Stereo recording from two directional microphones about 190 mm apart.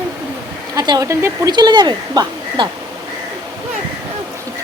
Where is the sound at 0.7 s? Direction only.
20° right (ahead or behind).